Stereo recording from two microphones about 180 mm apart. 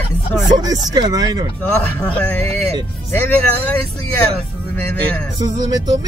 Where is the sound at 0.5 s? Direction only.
20° right (ahead or behind).